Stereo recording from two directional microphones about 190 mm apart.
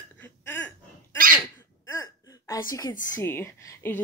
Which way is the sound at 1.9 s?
15° left (ahead or behind).